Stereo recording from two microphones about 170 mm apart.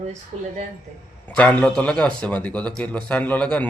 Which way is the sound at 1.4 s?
5° left (ahead or behind).